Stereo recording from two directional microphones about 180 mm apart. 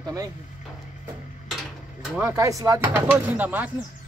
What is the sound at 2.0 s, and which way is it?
Speech, 10° right (ahead or behind).